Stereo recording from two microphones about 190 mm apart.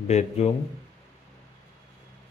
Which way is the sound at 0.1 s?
35° left (ahead or behind).